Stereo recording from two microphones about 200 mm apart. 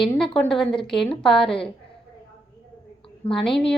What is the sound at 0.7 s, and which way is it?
Speech, 25° left (ahead or behind).